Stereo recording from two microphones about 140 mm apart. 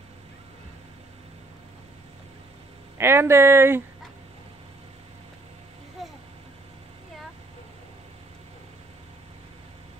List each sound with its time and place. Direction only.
3.0 s speech: 20° right (ahead or behind)